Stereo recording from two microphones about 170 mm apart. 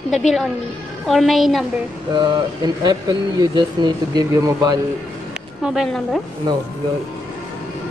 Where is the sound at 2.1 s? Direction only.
25° right (ahead or behind).